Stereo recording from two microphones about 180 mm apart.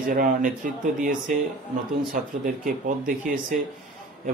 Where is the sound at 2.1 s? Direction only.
50° right (ahead or behind).